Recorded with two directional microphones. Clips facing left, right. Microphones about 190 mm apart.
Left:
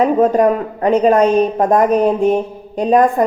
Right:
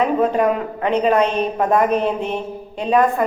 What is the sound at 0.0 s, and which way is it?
A woman's voice, 40° left (ahead or behind).